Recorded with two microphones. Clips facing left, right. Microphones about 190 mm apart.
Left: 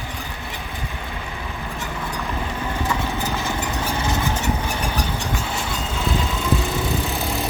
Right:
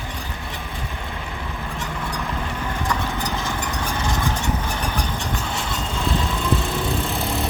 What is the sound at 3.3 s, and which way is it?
Vehicle, 15° left (ahead or behind).